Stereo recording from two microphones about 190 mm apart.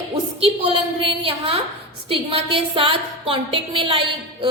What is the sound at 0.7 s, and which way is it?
A woman's voice, 30° right (ahead or behind).